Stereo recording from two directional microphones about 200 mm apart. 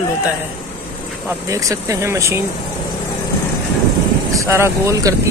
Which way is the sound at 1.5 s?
15° right (ahead or behind).